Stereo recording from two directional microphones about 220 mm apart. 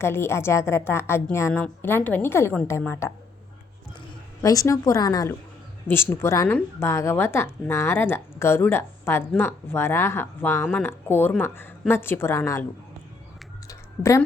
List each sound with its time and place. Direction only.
0.0 s a woman's voice: 10° left (ahead or behind)
4.4 s a woman's voice: 15° left (ahead or behind)
13.7 s a sound: 15° left (ahead or behind)